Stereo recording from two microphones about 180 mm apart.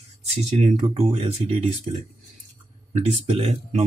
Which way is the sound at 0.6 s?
40° right (ahead or behind).